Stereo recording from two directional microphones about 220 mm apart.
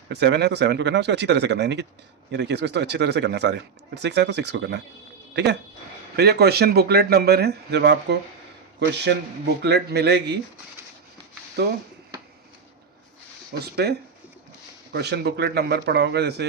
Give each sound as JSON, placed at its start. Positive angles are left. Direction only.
{"t": 0.1, "sound": "speech", "side_deg": -50}
{"t": 9.6, "sound": "speech", "side_deg": -50}
{"t": 13.6, "sound": "speech", "side_deg": -45}
{"t": 14.9, "sound": "speech", "side_deg": -50}